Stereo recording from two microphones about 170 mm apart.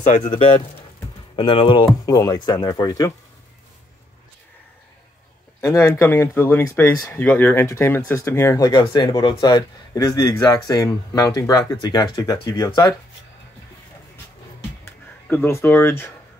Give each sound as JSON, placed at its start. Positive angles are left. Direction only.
{"t": 0.0, "sound": "speech", "side_deg": 45}
{"t": 1.3, "sound": "speech", "side_deg": 30}
{"t": 2.0, "sound": "speech", "side_deg": 20}
{"t": 5.6, "sound": "speech", "side_deg": 20}
{"t": 15.2, "sound": "speech", "side_deg": 10}